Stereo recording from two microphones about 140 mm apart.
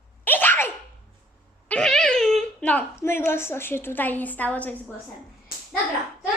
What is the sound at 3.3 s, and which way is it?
A woman's voice, 15° left (ahead or behind).